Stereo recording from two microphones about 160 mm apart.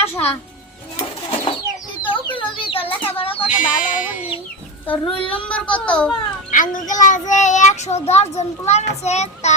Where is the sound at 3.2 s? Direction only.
35° left (ahead or behind).